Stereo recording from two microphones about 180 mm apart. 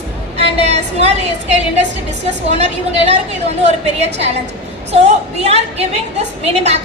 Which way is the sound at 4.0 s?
35° right (ahead or behind).